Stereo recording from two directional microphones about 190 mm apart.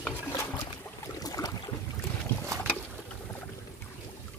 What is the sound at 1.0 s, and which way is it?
Boat, 20° left (ahead or behind).